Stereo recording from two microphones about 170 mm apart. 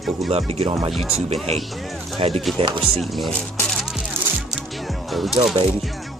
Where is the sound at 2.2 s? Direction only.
35° right (ahead or behind).